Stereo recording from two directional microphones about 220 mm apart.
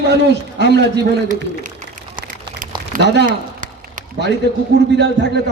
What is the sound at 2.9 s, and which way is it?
Speech, 50° right (ahead or behind).